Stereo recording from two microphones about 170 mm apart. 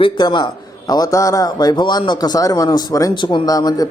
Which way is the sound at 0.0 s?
25° left (ahead or behind).